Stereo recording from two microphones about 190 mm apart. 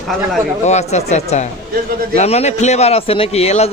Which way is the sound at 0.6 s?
35° left (ahead or behind).